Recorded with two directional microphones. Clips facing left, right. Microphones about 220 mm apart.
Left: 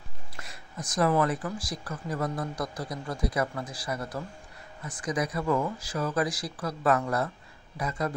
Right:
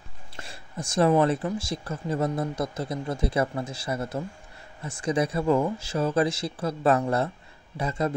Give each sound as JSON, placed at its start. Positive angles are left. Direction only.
{"t": 0.4, "sound": "speech", "side_deg": -30}